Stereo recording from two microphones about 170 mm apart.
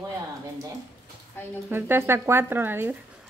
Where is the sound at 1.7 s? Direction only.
10° right (ahead or behind).